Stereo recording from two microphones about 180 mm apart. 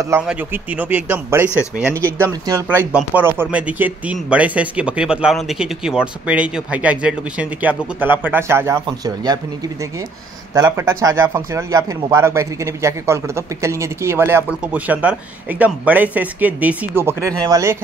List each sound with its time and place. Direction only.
0.3 s speech: 10° right (ahead or behind)
10.5 s speech: 15° right (ahead or behind)